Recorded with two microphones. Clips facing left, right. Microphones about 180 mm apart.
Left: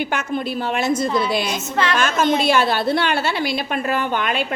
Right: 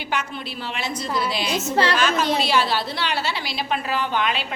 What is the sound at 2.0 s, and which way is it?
A woman's voice, 50° left (ahead or behind).